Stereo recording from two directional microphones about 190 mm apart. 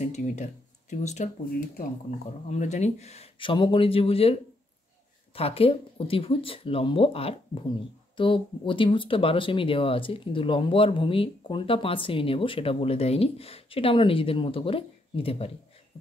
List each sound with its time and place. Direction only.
0.0 s speech: 40° left (ahead or behind)